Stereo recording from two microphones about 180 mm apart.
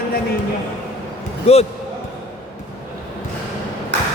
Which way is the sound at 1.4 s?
35° left (ahead or behind).